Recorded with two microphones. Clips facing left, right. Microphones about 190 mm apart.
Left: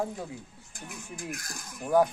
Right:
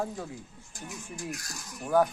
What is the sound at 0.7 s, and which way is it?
Speech, 55° left (ahead or behind).